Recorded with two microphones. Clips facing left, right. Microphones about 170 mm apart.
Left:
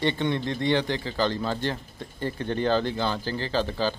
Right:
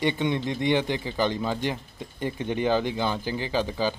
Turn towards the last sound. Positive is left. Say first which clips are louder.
# even
turn(degrees=-15)  # may be behind; listen again after turning